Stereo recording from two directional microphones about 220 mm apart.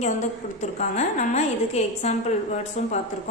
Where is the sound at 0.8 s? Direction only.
35° left (ahead or behind).